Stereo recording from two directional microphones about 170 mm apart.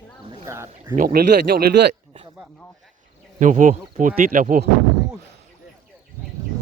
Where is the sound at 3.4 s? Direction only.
50° right (ahead or behind).